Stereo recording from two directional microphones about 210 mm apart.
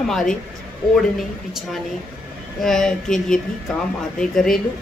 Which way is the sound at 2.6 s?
Centre (ahead or behind).